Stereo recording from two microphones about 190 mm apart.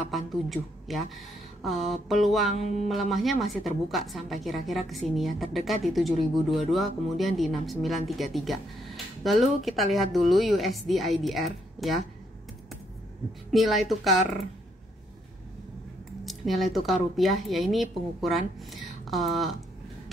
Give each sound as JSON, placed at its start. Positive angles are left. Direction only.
{"t": 0.1, "sound": "speech", "side_deg": 0}
{"t": 2.6, "sound": "speech", "side_deg": 35}
{"t": 2.9, "sound": "speech", "side_deg": 0}
{"t": 13.5, "sound": "speech", "side_deg": 0}
{"t": 16.3, "sound": "a sound", "side_deg": 0}
{"t": 16.7, "sound": "speech", "side_deg": 0}